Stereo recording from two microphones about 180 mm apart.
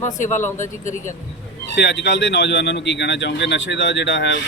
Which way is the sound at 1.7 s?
70° left (ahead or behind).